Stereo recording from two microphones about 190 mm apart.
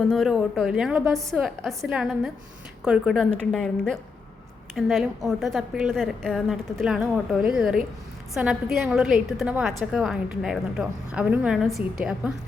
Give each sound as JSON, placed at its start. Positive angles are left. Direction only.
{"t": 0.1, "sound": "a woman's voice", "side_deg": 0}